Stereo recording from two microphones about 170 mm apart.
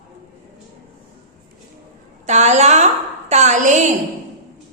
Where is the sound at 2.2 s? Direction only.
40° right (ahead or behind).